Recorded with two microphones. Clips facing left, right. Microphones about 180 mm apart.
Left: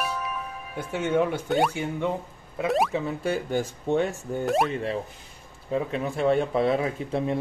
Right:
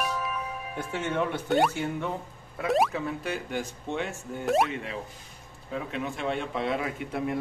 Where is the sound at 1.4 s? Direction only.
Centre (ahead or behind).